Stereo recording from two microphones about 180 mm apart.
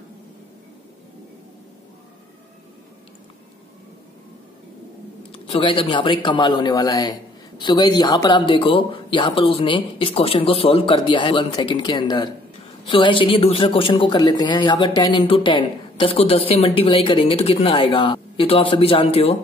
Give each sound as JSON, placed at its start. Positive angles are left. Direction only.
{"t": 5.3, "sound": "a man's voice", "side_deg": 30}